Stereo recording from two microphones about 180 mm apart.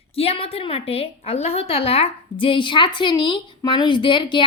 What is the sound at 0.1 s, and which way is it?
A woman's voice, 35° left (ahead or behind).